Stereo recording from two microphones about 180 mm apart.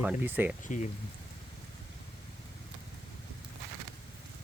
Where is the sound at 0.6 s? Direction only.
45° left (ahead or behind).